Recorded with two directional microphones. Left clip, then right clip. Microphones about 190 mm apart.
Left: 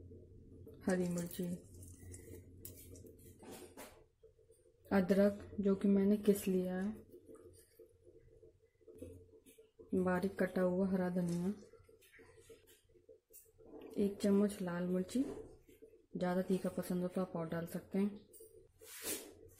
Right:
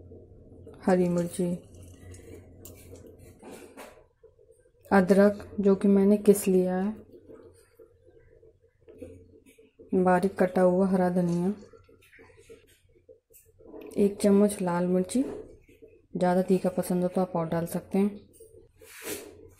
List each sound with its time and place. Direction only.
0.7 s a woman's voice: 5° right (ahead or behind)
4.8 s a woman's voice: 5° right (ahead or behind)
9.9 s a woman's voice: 5° right (ahead or behind)
13.9 s a woman's voice: 5° right (ahead or behind)
16.2 s a woman's voice: 5° right (ahead or behind)